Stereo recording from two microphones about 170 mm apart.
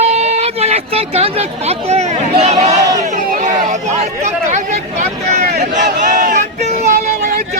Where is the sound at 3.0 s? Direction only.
45° right (ahead or behind).